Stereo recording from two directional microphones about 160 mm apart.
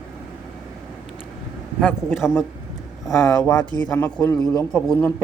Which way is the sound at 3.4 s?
25° left (ahead or behind).